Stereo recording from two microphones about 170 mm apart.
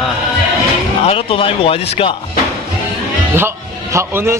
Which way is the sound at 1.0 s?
35° left (ahead or behind).